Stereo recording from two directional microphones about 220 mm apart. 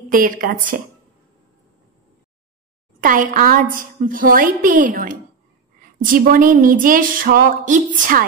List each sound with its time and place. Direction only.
0.1 s a woman's voice: 40° right (ahead or behind)
3.0 s a woman's voice: 40° right (ahead or behind)